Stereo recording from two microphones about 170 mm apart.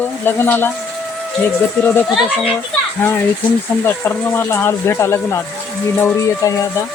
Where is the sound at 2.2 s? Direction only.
Centre (ahead or behind).